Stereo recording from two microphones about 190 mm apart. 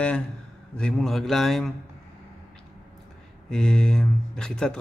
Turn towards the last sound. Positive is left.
turn(degrees=5)  # may be behind; listen again after turning